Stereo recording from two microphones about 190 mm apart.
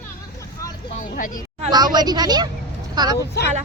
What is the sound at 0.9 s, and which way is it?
Speech, 45° left (ahead or behind).